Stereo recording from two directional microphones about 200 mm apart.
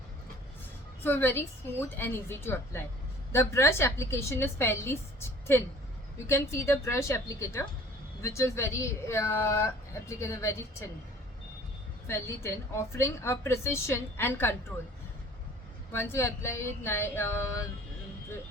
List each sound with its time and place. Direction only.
1.0 s speech: 10° left (ahead or behind)
12.0 s speech: 10° left (ahead or behind)
15.9 s speech: 10° left (ahead or behind)